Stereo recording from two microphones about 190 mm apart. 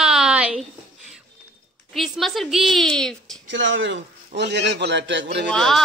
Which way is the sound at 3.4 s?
75° right (ahead or behind).